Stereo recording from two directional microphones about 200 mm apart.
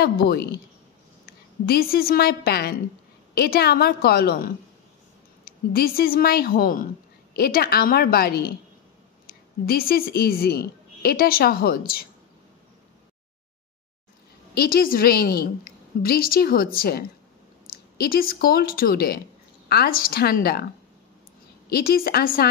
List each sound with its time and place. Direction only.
0.0 s a woman's voice: 50° left (ahead or behind)
14.5 s a woman's voice: 50° left (ahead or behind)
21.6 s a woman's voice: 50° left (ahead or behind)